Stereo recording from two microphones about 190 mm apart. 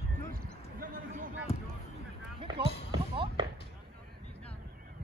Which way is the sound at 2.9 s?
25° right (ahead or behind).